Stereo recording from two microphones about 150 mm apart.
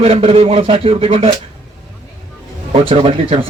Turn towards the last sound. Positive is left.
turn(degrees=-40)  # may be behind; listen again after turning